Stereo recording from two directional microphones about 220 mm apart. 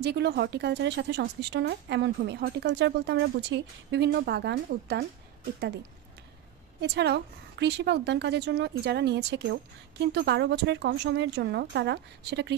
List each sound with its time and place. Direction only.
0.0 s a woman's voice: 50° right (ahead or behind)
6.8 s a woman's voice: 50° right (ahead or behind)